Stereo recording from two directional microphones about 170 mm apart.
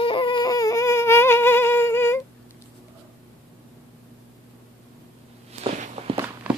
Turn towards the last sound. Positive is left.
turn(degrees=-10)  # may be behind; listen again after turning